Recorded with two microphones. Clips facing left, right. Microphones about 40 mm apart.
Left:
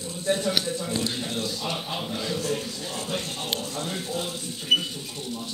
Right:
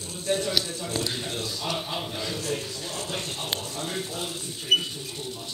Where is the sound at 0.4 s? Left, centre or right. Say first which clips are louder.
Left 2 dB; left.